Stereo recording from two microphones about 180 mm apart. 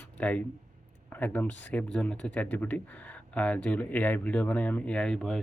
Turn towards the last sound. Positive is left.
turn(degrees=0)  # may be behind; listen again after turning